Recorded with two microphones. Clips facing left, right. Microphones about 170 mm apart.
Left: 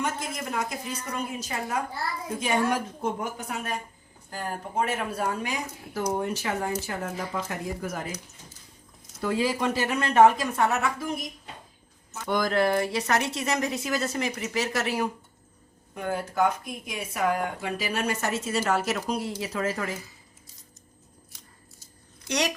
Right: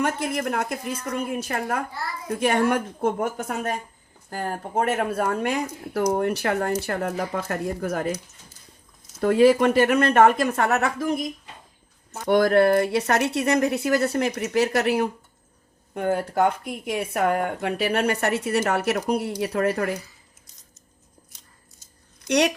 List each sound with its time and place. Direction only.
0.0 s speech: 65° right (ahead or behind)
9.2 s speech: 60° right (ahead or behind)
12.3 s speech: 65° right (ahead or behind)
16.1 s speech: 60° right (ahead or behind)
21.3 s scissors: 20° right (ahead or behind)
22.3 s a woman's voice: 60° right (ahead or behind)